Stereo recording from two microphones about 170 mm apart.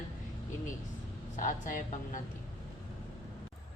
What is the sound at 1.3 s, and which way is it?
Speech, 50° left (ahead or behind).